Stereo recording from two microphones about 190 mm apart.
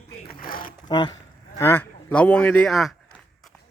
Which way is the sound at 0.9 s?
25° left (ahead or behind).